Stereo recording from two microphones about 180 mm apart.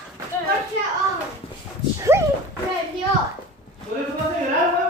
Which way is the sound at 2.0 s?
15° right (ahead or behind).